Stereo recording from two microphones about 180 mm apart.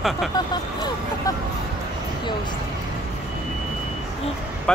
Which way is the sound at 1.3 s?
20° left (ahead or behind).